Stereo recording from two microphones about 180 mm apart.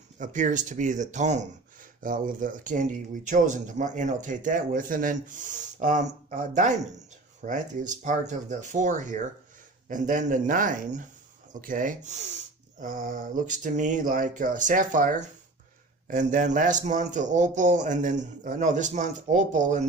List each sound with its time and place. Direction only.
0.2 s speech: 45° right (ahead or behind)